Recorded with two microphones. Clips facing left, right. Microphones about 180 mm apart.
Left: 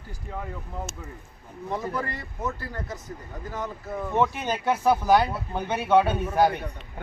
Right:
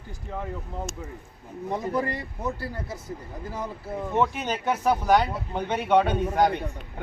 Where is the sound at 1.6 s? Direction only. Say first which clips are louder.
Right 3 dB; 15° right (ahead or behind).